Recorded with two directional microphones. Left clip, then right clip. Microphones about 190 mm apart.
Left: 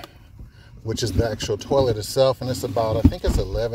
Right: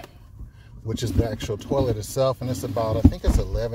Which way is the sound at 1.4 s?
Centre (ahead or behind).